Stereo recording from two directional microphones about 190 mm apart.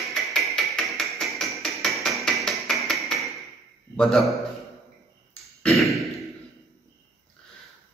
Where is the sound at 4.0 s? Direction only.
Centre (ahead or behind).